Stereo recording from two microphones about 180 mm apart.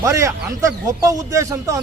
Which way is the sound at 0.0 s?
15° right (ahead or behind).